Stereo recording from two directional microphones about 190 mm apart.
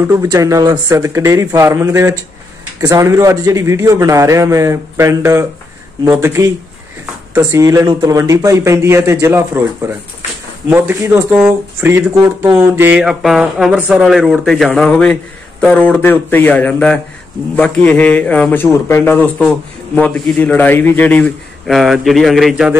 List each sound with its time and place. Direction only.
0.0 s a man's voice: 20° right (ahead or behind); by 22.8 s centre (ahead or behind)